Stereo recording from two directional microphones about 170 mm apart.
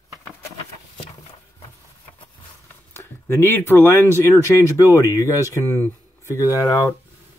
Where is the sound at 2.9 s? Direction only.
15° left (ahead or behind).